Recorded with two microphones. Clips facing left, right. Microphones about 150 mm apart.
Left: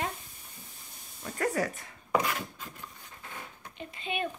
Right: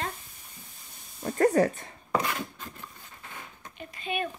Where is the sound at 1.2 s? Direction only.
40° right (ahead or behind).